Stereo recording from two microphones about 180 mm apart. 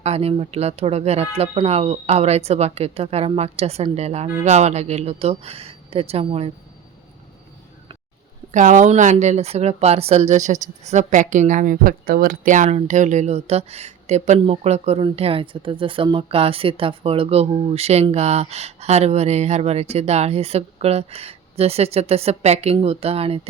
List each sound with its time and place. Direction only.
0.0 s a woman's voice: 35° right (ahead or behind)
8.5 s a woman's voice: 45° right (ahead or behind)